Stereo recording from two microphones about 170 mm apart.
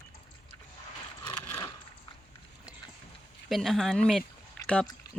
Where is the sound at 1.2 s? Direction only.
20° left (ahead or behind).